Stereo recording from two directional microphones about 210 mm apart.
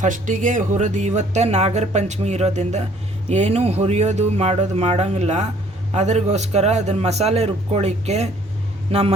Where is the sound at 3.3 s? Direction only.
35° right (ahead or behind).